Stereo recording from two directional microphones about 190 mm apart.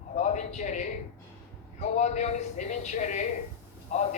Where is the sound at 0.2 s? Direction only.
40° left (ahead or behind).